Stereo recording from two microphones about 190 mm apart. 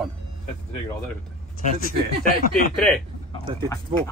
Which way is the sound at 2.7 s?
5° left (ahead or behind).